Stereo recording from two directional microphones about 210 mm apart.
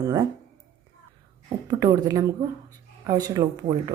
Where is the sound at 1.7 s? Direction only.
20° right (ahead or behind).